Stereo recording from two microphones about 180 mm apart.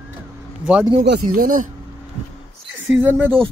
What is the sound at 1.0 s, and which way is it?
Speech, 60° right (ahead or behind).